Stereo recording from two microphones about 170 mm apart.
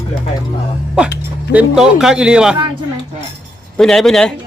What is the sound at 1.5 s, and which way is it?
Speech, 5° right (ahead or behind).